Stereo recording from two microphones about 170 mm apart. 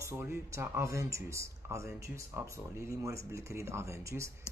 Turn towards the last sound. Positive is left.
turn(degrees=-15)  # may be behind; listen again after turning